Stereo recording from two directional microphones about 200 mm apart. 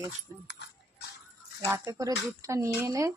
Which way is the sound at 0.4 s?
60° left (ahead or behind).